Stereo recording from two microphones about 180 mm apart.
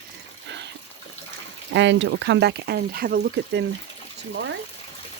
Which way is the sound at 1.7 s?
85° right.